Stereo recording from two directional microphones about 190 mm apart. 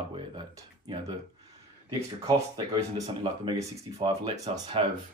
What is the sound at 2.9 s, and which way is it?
Speech, 25° right (ahead or behind).